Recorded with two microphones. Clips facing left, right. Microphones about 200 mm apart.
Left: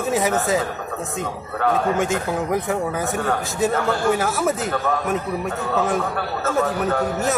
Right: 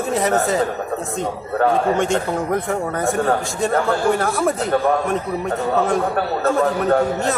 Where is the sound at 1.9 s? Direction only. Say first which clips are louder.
Right 2 dB; 5° left (ahead or behind).